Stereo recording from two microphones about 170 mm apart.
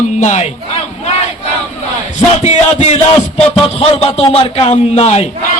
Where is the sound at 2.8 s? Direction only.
40° left (ahead or behind).